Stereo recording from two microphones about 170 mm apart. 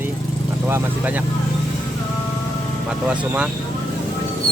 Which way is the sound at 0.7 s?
10° right (ahead or behind).